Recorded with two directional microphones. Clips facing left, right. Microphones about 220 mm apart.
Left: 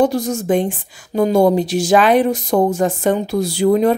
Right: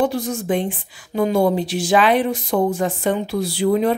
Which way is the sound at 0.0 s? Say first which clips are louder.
Left 4 dB; 40° left (ahead or behind).